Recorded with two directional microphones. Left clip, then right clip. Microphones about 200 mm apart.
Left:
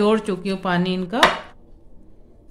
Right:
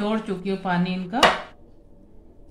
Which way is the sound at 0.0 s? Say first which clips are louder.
Left 7 dB; 55° left (ahead or behind).